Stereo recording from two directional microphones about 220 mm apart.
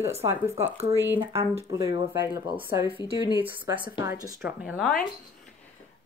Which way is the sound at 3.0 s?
20° left (ahead or behind).